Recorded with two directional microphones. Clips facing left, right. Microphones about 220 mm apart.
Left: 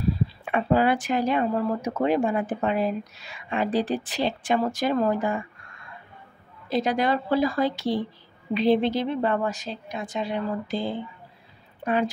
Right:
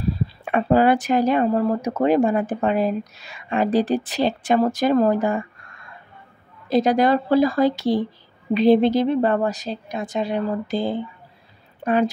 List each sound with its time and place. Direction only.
0.5 s speech: 45° right (ahead or behind)
6.7 s a woman's voice: 40° right (ahead or behind)